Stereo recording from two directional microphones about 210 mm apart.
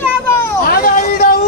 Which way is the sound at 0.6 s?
45° left (ahead or behind).